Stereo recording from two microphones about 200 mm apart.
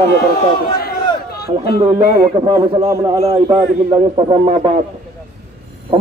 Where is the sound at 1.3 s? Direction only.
55° left (ahead or behind).